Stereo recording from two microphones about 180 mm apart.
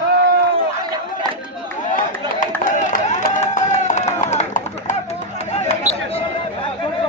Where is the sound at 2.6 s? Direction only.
40° left (ahead or behind).